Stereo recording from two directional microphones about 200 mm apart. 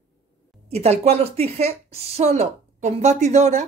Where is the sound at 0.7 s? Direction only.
30° right (ahead or behind).